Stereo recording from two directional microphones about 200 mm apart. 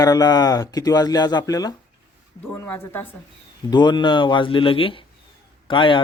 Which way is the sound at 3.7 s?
20° left (ahead or behind).